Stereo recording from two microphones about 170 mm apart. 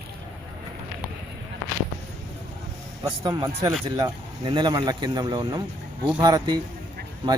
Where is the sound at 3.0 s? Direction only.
25° right (ahead or behind).